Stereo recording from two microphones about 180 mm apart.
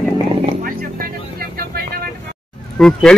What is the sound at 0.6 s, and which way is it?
Vehicle, 55° right (ahead or behind).